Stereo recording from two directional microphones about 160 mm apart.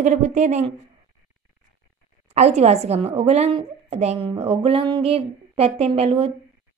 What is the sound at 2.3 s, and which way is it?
Speech, 45° right (ahead or behind).